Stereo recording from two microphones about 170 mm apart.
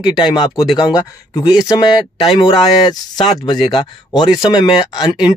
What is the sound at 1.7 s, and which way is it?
Speech, 25° left (ahead or behind).